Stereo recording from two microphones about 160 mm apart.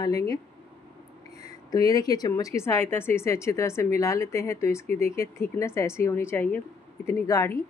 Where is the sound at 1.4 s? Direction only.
25° left (ahead or behind).